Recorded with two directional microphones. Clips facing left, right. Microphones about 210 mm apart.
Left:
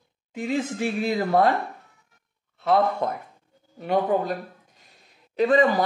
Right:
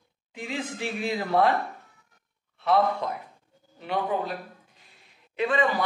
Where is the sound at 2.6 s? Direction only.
45° left (ahead or behind).